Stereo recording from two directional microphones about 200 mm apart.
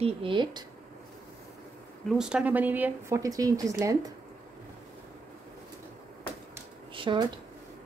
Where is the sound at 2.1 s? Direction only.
5° right (ahead or behind).